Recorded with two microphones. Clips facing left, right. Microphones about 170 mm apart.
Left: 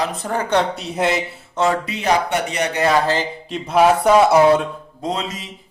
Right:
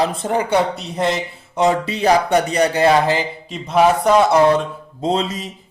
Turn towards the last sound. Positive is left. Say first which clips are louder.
# right 5 dB
turn(degrees=-35)  # may be behind; listen again after turning